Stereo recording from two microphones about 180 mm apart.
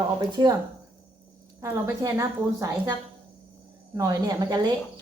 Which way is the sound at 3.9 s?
20° right (ahead or behind).